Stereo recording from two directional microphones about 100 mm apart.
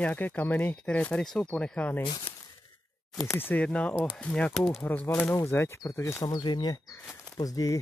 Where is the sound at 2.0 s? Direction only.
55° left (ahead or behind).